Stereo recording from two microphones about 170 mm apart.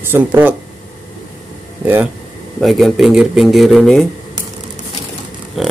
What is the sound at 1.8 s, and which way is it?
Speech, 10° right (ahead or behind).